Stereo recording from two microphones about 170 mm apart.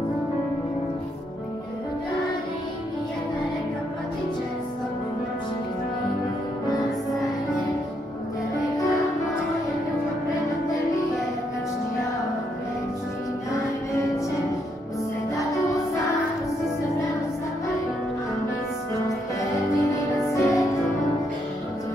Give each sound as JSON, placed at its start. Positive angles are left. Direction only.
{"t": 15.5, "sound": "music", "side_deg": 20}
{"t": 19.5, "sound": "music", "side_deg": 20}